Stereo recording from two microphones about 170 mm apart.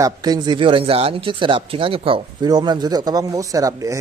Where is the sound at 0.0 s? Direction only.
25° right (ahead or behind).